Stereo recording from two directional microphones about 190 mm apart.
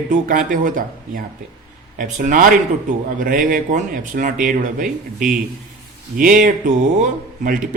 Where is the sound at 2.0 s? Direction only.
40° right (ahead or behind).